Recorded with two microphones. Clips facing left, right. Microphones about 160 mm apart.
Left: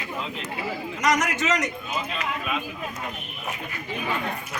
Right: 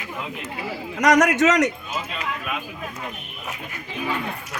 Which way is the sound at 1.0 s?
70° right (ahead or behind).